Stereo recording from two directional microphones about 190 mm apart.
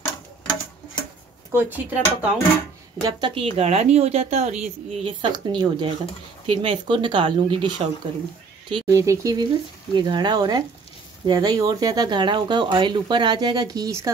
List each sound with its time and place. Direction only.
1.5 s speech: 10° right (ahead or behind)
3.0 s a woman's voice: 25° right (ahead or behind)